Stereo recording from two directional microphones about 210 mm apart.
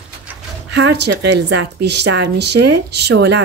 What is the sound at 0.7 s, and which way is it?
A woman's voice, 55° right (ahead or behind).